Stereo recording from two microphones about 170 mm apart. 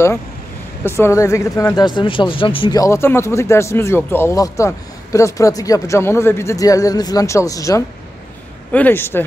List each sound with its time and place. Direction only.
0.8 s speech: 15° left (ahead or behind)